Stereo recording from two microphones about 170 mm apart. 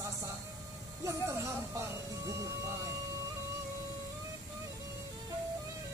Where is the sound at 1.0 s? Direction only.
20° right (ahead or behind).